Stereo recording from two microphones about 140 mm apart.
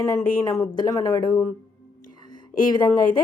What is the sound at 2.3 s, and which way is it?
Whispering, 30° left (ahead or behind).